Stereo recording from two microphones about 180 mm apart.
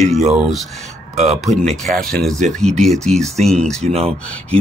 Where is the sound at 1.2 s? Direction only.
40° right (ahead or behind).